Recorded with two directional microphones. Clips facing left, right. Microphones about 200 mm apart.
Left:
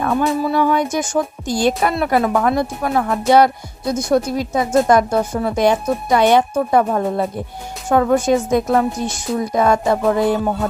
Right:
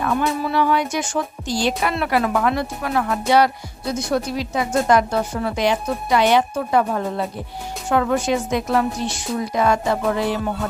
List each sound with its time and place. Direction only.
0.0 s speech: 40° left (ahead or behind)